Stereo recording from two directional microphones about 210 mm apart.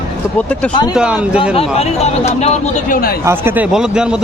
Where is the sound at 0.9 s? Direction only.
5° right (ahead or behind).